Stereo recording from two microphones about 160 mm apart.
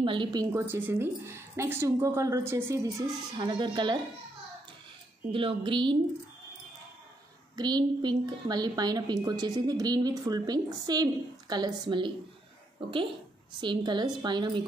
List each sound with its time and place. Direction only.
0.0 s a woman's voice: 30° right (ahead or behind)
5.3 s a woman's voice: 35° right (ahead or behind)
7.5 s a woman's voice: 25° right (ahead or behind)
13.6 s a woman's voice: 30° right (ahead or behind)